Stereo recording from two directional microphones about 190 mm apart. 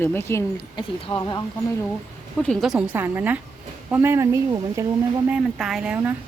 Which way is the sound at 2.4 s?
5° left (ahead or behind).